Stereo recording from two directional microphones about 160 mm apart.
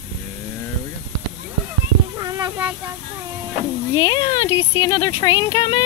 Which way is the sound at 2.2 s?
20° right (ahead or behind).